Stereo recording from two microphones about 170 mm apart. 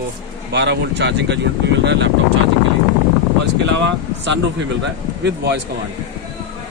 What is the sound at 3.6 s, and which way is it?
Speech, 90° right.